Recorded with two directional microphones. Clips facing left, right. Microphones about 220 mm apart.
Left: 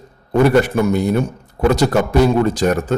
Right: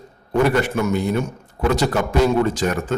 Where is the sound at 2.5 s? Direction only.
40° left (ahead or behind).